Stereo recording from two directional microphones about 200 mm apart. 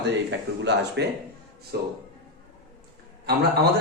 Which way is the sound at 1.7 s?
50° right (ahead or behind).